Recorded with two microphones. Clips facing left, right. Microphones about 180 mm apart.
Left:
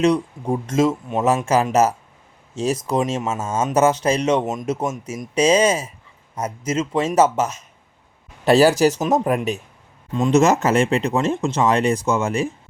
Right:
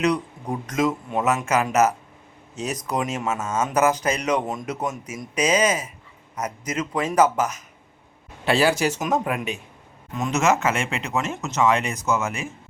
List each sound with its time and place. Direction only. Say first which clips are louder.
0.0 s speech: left 5 dB; 25° left (ahead or behind)
8.4 s speech: left 6 dB; 40° left (ahead or behind)
10.1 s speech: left 6 dB; 25° left (ahead or behind)